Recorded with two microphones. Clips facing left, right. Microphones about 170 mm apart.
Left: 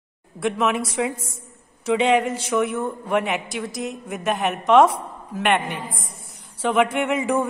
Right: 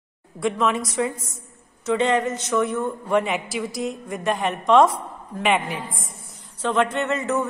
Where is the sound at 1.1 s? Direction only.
25° left (ahead or behind).